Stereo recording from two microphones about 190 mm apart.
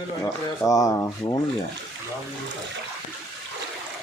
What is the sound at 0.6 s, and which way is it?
Speech, 15° left (ahead or behind).